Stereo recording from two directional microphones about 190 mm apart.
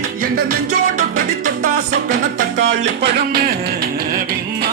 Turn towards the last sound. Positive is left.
turn(degrees=-55)  # may be behind; listen again after turning